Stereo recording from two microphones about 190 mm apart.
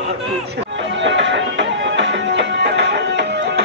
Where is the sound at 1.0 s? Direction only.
70° right (ahead or behind).